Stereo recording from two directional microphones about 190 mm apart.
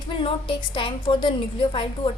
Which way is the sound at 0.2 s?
25° left (ahead or behind).